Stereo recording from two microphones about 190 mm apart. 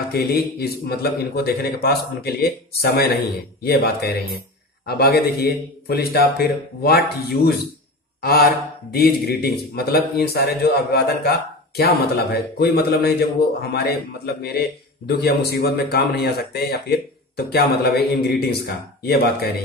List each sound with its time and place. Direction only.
0.1 s a man's voice: 55° left (ahead or behind)